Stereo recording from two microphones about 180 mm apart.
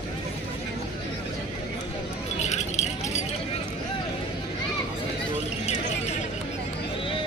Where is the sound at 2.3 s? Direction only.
40° left (ahead or behind).